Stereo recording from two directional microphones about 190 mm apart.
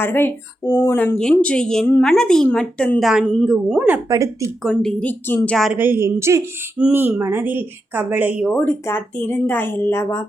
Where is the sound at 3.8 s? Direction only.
15° right (ahead or behind).